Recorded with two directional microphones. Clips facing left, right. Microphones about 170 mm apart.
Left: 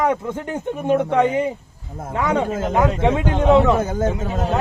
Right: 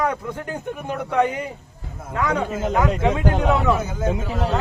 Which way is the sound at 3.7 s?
50° left (ahead or behind).